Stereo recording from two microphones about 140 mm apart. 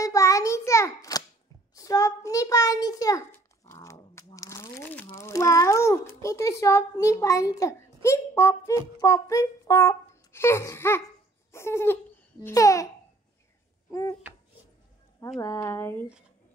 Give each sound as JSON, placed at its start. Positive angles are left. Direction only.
{"t": 0.0, "sound": "a sound", "side_deg": 25}
{"t": 3.3, "sound": "dog", "side_deg": 20}
{"t": 4.8, "sound": "crumpling", "side_deg": 10}
{"t": 5.1, "sound": "cat", "side_deg": 20}
{"t": 11.5, "sound": "a sound", "side_deg": 20}
{"t": 12.4, "sound": "a child's voice", "side_deg": 25}
{"t": 15.4, "sound": "speech", "side_deg": 20}